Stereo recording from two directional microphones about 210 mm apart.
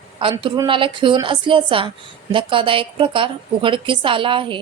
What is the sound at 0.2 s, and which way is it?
A woman's voice, 25° right (ahead or behind).